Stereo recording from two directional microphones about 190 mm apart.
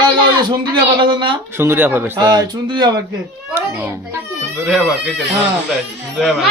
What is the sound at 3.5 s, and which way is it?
Speech, 10° right (ahead or behind).